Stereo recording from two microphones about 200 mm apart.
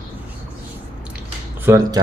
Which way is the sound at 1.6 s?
10° right (ahead or behind).